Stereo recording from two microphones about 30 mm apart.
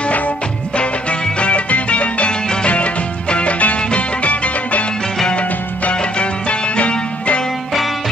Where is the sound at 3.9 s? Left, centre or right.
Left.